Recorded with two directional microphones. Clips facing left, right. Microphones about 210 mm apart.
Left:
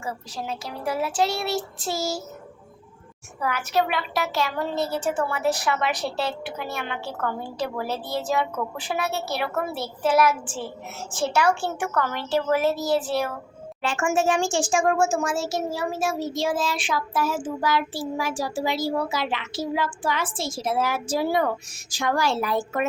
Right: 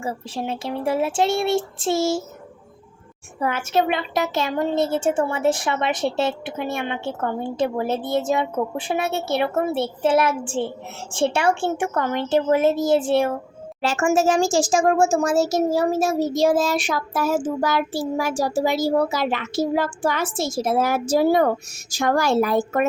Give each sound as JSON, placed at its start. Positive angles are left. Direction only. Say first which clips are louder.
{"t": 0.0, "sound": "a woman's voice", "louder": "right 5 dB", "side_deg": -25}
{"t": 3.4, "sound": "a woman's voice", "louder": "right 3 dB", "side_deg": -25}
{"t": 13.8, "sound": "a child's voice", "louder": "right 4 dB", "side_deg": -40}